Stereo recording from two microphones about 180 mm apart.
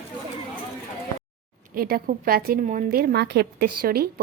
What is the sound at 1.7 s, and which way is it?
A woman's voice, 55° right (ahead or behind).